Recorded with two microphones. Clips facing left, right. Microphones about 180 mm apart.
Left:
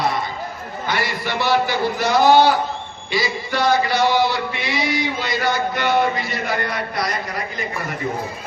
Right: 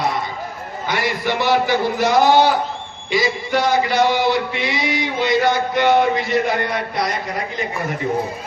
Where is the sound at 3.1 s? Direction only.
20° right (ahead or behind).